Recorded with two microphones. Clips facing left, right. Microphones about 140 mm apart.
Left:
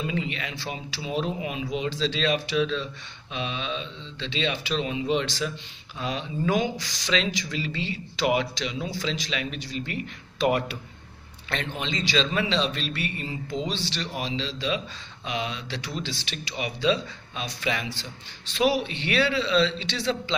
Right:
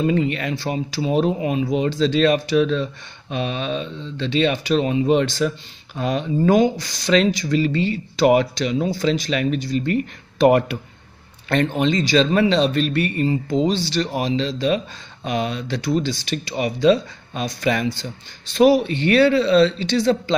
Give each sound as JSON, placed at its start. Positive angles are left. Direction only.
{"t": 0.0, "sound": "speech", "side_deg": -50}
{"t": 11.4, "sound": "speech", "side_deg": -50}